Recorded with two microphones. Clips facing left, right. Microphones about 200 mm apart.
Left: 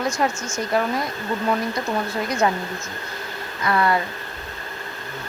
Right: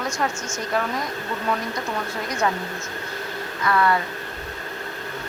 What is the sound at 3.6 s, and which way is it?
Speech, 25° left (ahead or behind).